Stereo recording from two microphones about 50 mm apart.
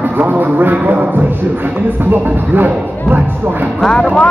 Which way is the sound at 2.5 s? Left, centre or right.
Right.